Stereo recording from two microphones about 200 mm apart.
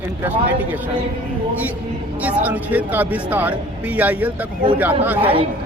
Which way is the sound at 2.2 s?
10° right (ahead or behind).